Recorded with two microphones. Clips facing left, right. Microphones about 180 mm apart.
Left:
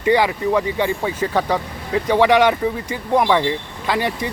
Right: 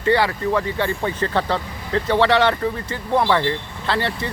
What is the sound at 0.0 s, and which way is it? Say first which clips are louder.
Speech: left 2 dB; 15° left (ahead or behind).